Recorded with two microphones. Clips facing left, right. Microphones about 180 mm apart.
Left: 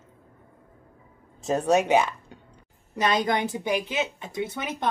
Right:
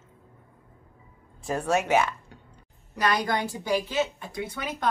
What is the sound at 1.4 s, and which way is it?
A woman's voice, 20° left (ahead or behind).